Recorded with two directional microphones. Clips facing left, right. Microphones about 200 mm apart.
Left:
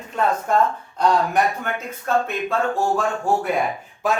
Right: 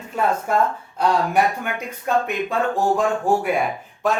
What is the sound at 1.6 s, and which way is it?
Speech, 15° right (ahead or behind).